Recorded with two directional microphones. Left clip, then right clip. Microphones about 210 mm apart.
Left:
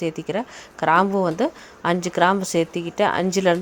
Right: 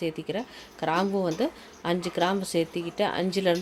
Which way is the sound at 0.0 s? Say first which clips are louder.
Left 6 dB; 20° left (ahead or behind).